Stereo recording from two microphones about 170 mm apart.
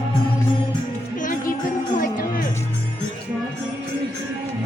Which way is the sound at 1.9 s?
55° left (ahead or behind).